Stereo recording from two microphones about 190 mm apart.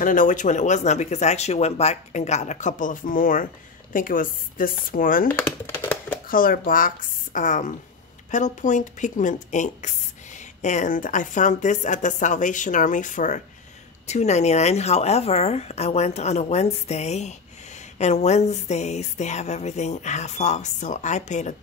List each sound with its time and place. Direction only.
0.0 s a woman's voice: 45° left (ahead or behind)
5.3 s speech: 10° left (ahead or behind)
6.2 s a woman's voice: 50° left (ahead or behind)